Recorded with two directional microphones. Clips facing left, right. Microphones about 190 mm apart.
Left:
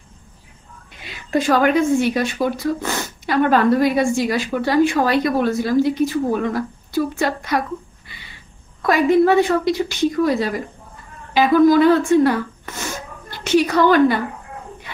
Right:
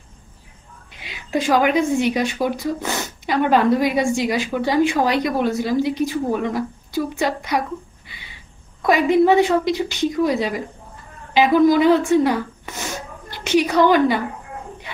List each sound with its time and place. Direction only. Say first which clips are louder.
1.4 s speech: left 1 dB; 15° right (ahead or behind)
8.8 s speech: left 1 dB; 20° right (ahead or behind)